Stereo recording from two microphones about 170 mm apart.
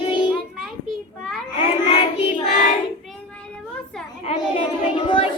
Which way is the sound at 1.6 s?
35° left (ahead or behind).